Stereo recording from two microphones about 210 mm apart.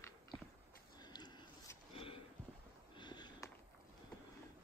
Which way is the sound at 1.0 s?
20° left (ahead or behind).